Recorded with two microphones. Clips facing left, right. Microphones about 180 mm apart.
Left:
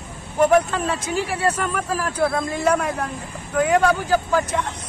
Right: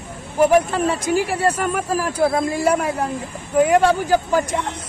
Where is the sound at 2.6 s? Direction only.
10° right (ahead or behind).